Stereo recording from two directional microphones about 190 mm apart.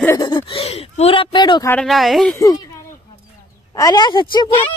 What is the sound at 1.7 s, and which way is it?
Speech, centre (ahead or behind).